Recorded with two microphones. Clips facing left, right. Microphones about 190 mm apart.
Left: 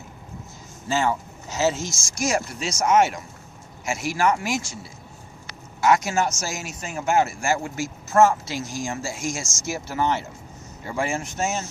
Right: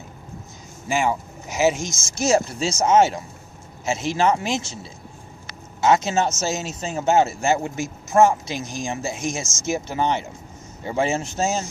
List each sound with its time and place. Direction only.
0.9 s speech: 10° right (ahead or behind); by 11.6 s 30° right (ahead or behind)